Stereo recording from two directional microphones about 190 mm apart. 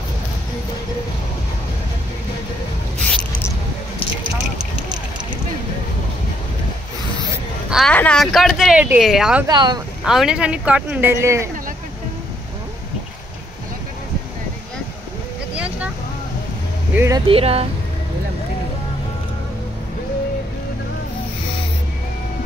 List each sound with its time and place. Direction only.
7.7 s speech: 5° left (ahead or behind)
9.5 s speech: 20° right (ahead or behind)
10.0 s speech: 5° right (ahead or behind)
15.5 s vehicle: 5° right (ahead or behind)
16.9 s speech: 15° right (ahead or behind)
17.3 s speech: 30° right (ahead or behind)